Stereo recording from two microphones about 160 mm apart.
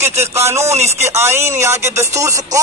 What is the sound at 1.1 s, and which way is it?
Speech, 15° right (ahead or behind).